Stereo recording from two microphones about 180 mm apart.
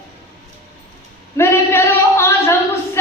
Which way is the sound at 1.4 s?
15° left (ahead or behind).